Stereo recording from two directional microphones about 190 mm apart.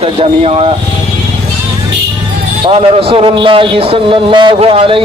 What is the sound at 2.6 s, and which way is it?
A man's voice, 30° right (ahead or behind).